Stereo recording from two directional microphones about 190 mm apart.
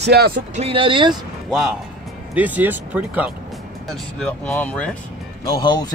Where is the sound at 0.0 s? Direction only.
55° right (ahead or behind).